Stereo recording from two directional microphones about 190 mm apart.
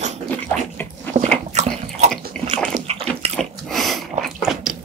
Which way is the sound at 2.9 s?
30° right (ahead or behind).